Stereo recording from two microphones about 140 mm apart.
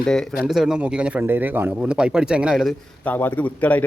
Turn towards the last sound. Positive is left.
turn(degrees=10)  # may be behind; listen again after turning